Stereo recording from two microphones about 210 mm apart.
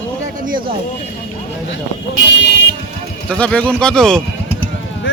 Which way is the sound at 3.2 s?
5° left (ahead or behind).